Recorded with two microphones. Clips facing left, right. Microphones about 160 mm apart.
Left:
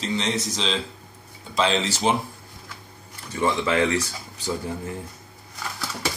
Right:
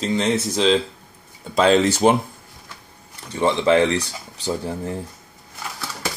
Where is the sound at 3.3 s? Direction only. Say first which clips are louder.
Right 5 dB; 30° right (ahead or behind).